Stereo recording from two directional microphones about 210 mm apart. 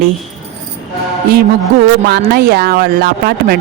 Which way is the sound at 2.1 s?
50° right (ahead or behind).